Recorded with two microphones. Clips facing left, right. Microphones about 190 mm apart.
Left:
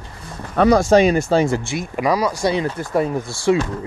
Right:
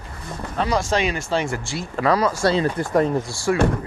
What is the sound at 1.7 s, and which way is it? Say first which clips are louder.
Speech: left 1 dB; 15° left (ahead or behind).